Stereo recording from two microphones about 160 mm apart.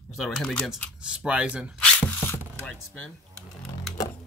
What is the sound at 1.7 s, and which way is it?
Zipper, 10° left (ahead or behind).